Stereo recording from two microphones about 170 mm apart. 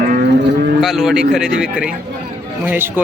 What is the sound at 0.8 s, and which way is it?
Speech, centre (ahead or behind).